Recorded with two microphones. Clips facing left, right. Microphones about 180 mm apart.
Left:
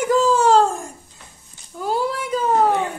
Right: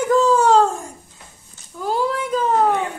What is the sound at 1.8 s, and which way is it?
Speech, 5° left (ahead or behind).